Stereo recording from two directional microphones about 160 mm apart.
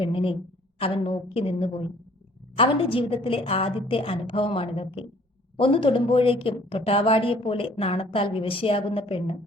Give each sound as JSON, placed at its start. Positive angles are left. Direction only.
{"t": 0.0, "sound": "a woman's voice", "side_deg": 35}